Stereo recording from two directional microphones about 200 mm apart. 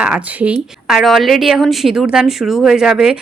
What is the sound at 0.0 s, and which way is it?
A woman's voice, 5° right (ahead or behind).